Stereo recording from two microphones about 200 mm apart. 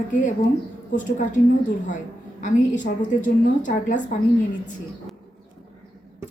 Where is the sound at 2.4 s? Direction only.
40° left (ahead or behind).